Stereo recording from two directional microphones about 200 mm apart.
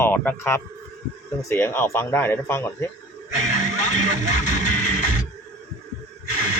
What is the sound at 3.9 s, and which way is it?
Speech, 40° left (ahead or behind).